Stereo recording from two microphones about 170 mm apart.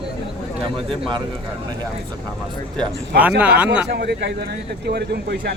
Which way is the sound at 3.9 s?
75° right (ahead or behind).